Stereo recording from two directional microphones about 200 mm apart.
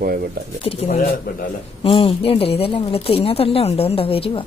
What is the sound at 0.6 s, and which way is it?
A woman's voice, 30° left (ahead or behind).